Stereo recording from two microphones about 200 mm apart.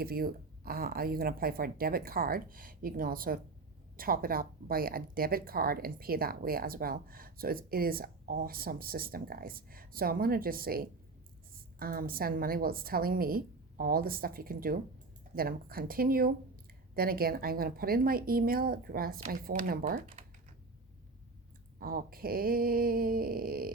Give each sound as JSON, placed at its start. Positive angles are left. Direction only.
{"t": 0.0, "sound": "speech", "side_deg": -50}
{"t": 21.8, "sound": "speech", "side_deg": -45}